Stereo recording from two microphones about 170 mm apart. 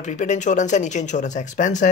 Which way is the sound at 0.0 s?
45° left (ahead or behind).